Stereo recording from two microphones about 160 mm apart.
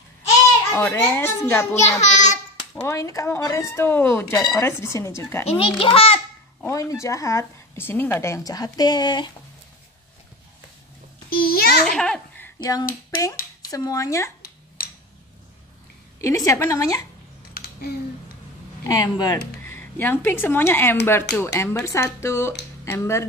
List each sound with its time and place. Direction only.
0.7 s speech: 15° left (ahead or behind)
1.8 s a child's voice: 45° left (ahead or behind)
2.7 s speech: 20° left (ahead or behind)
5.5 s a child's voice: 35° left (ahead or behind)
6.6 s a woman's voice: 20° left (ahead or behind)
11.2 s babbling: 70° left (ahead or behind)
11.8 s a sound: 5° left (ahead or behind)
13.7 s a woman's voice: 20° left (ahead or behind)
16.2 s a woman's voice: 20° left (ahead or behind)
18.9 s a woman's voice: 20° left (ahead or behind)
19.7 s speech: 10° left (ahead or behind)